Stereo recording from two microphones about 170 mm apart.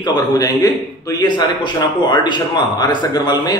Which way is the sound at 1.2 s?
25° left (ahead or behind).